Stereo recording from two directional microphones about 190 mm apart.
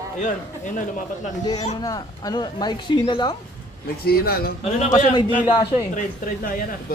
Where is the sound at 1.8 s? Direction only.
20° left (ahead or behind).